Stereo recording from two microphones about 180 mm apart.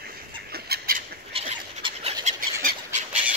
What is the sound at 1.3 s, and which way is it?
Dog, 35° right (ahead or behind).